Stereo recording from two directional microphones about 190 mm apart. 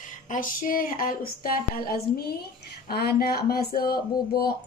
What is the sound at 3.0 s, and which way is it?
Speech, 55° left (ahead or behind).